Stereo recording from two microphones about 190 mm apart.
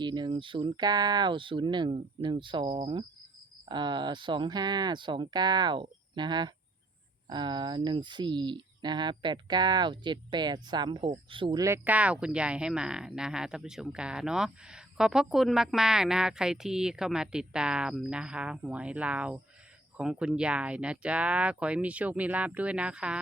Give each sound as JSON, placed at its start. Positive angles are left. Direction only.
{"t": 0.0, "sound": "speech", "side_deg": -25}